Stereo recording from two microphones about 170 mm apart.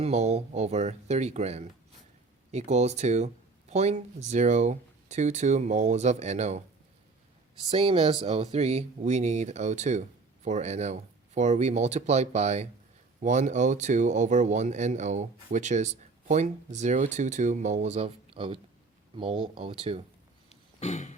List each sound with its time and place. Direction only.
0.0 s speech: 40° right (ahead or behind)
7.7 s speech: 35° right (ahead or behind)
20.7 s throat clearing: 40° left (ahead or behind)